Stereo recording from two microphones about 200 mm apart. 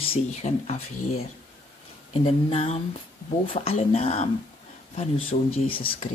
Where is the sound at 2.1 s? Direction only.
30° left (ahead or behind).